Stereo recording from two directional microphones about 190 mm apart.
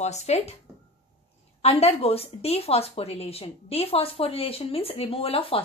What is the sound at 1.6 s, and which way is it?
A woman's voice, 30° left (ahead or behind).